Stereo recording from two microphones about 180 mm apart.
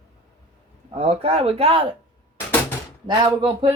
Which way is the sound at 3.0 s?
25° right (ahead or behind).